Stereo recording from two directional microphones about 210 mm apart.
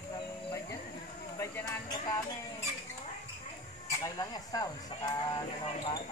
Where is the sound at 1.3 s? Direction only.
15° left (ahead or behind).